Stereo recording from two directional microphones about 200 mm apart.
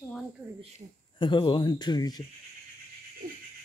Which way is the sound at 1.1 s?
25° left (ahead or behind).